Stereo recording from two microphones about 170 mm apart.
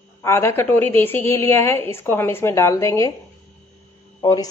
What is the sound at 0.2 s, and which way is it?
Speech, 15° left (ahead or behind).